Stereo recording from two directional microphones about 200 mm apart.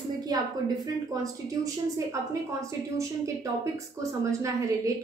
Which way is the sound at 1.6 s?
15° right (ahead or behind).